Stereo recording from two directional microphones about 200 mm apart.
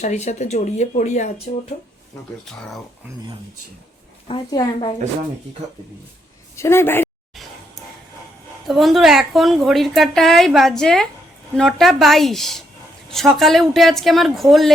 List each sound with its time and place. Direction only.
0.0 s speech: 35° left (ahead or behind)
2.4 s a woman's voice: centre (ahead or behind)
4.3 s a woman's voice: 25° left (ahead or behind)
6.6 s speech: 10° left (ahead or behind)
8.6 s a woman's voice: centre (ahead or behind)